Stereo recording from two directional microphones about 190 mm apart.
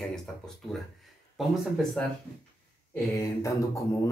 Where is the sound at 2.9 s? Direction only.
15° left (ahead or behind).